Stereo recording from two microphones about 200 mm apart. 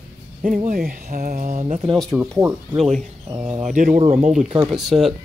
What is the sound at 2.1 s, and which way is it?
Speech, 15° right (ahead or behind).